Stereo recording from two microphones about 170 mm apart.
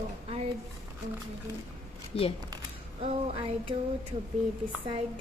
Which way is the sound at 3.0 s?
35° right (ahead or behind).